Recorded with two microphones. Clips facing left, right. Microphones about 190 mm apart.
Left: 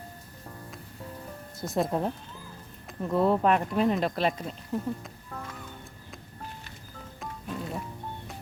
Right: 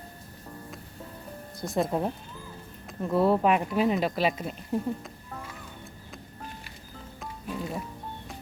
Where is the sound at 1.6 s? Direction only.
Centre (ahead or behind).